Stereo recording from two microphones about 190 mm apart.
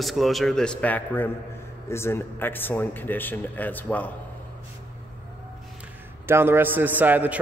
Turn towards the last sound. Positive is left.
turn(degrees=-10)  # may be behind; listen again after turning